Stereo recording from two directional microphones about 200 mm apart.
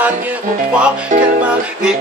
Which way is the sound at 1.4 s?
5° right (ahead or behind).